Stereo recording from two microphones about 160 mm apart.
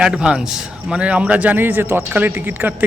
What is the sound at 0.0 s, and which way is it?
A man's voice, 5° right (ahead or behind).